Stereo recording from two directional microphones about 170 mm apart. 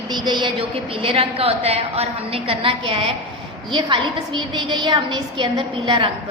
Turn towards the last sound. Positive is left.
turn(degrees=-30)  # may be behind; listen again after turning